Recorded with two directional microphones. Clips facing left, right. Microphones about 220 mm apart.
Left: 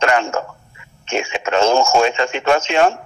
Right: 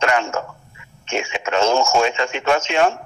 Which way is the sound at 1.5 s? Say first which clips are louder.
Left 3 dB; 30° left (ahead or behind).